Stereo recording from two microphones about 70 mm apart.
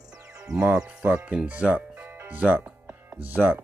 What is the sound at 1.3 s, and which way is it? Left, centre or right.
Speech, centre.